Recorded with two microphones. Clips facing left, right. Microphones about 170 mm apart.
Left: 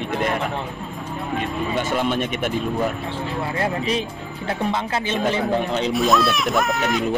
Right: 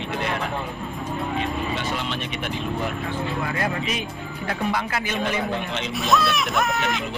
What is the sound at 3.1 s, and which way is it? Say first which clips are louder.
Speech: left 1 dB; 25° left (ahead or behind).